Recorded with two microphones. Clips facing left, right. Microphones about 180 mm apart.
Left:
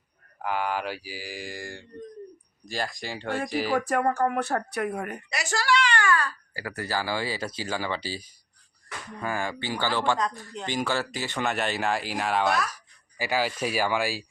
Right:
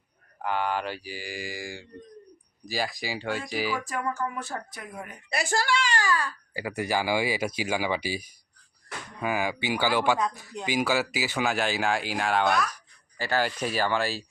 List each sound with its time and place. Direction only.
0.4 s speech: 5° left (ahead or behind)
3.8 s speech: 60° left (ahead or behind)
5.3 s a woman's voice: 50° right (ahead or behind)
6.1 s speech: 15° right (ahead or behind); by 14.3 s 10° left (ahead or behind)